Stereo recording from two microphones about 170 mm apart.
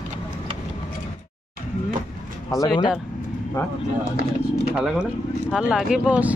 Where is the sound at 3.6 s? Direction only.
15° left (ahead or behind).